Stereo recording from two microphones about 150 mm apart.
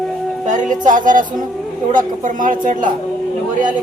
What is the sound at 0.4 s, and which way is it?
A woman's voice, 55° right (ahead or behind).